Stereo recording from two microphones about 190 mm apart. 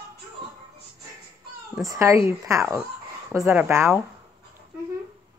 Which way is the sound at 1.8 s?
15° right (ahead or behind).